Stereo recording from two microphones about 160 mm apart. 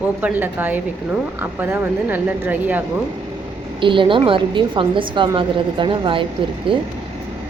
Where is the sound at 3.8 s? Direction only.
30° right (ahead or behind).